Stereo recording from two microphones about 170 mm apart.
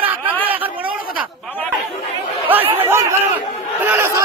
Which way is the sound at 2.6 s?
35° right (ahead or behind).